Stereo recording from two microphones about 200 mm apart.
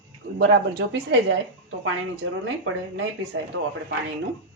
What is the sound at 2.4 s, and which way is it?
Speech, 70° right (ahead or behind).